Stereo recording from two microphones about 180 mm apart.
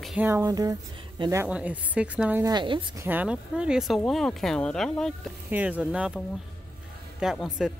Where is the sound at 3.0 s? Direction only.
10° right (ahead or behind).